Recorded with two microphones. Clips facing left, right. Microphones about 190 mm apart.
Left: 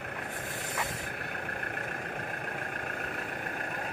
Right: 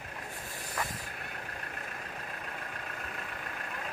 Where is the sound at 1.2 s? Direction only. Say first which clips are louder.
Left 5 dB; 60° left (ahead or behind).